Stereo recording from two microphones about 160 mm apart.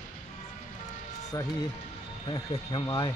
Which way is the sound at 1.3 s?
25° left (ahead or behind).